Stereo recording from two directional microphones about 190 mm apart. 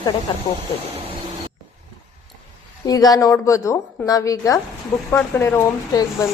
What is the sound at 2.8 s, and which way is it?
A woman's voice, 20° left (ahead or behind).